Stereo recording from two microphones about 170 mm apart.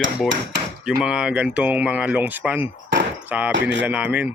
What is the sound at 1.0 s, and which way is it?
Speech, 5° right (ahead or behind).